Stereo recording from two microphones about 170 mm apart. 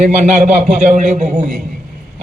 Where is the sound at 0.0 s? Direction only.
45° right (ahead or behind).